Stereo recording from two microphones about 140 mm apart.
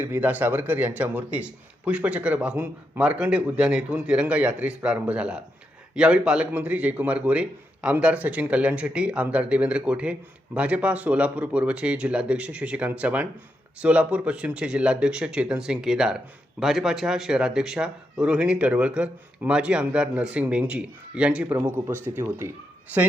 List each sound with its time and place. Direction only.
0.0 s speech: 10° right (ahead or behind)